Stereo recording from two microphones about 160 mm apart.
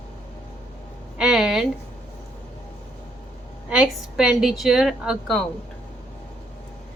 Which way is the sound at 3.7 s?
5° right (ahead or behind).